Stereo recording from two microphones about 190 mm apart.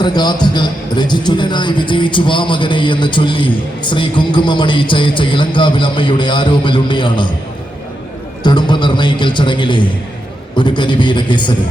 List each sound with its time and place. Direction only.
0.0 s a man's voice: 20° left (ahead or behind)
8.4 s a man's voice: 25° left (ahead or behind)